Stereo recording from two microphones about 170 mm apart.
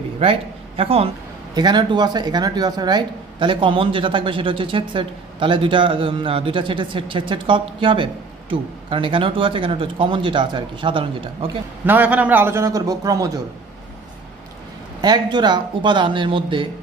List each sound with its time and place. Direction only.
0.2 s a man's voice: 35° right (ahead or behind)
11.8 s a man's voice: 10° right (ahead or behind)
15.3 s a man's voice: 25° right (ahead or behind)